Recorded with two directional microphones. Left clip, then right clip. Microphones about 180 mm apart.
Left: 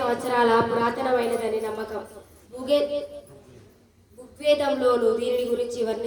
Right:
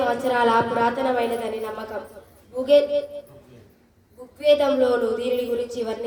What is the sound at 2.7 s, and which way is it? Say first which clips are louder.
Speech: right 5 dB; 30° right (ahead or behind).